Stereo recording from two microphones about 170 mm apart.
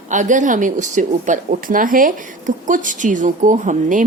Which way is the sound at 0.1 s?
45° right (ahead or behind).